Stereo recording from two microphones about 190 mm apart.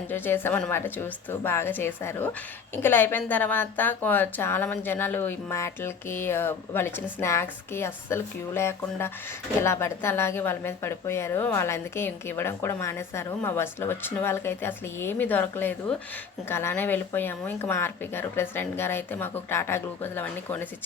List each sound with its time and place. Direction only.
0.1 s a woman's voice: 10° left (ahead or behind)